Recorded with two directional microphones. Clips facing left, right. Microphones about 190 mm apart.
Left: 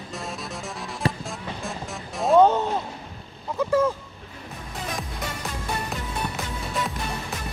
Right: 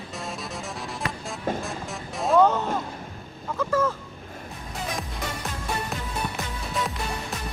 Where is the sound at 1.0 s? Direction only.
30° left (ahead or behind).